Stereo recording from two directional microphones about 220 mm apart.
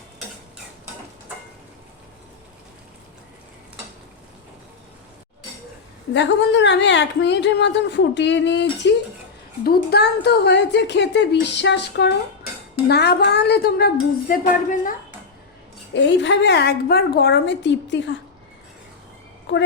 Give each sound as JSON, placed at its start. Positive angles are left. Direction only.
{"t": 6.1, "sound": "a woman's voice", "side_deg": 55}
{"t": 15.9, "sound": "a woman's voice", "side_deg": 55}
{"t": 19.5, "sound": "a sound", "side_deg": 55}